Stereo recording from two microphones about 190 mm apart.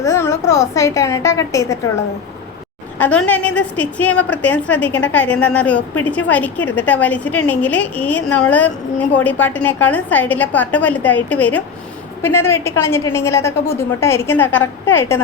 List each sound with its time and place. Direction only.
0.0 s a woman's voice: 15° left (ahead or behind)
3.0 s a woman's voice: 5° left (ahead or behind)